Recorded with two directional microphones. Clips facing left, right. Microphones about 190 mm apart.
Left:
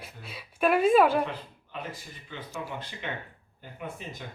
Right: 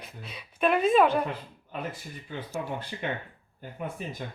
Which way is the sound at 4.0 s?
45° right (ahead or behind).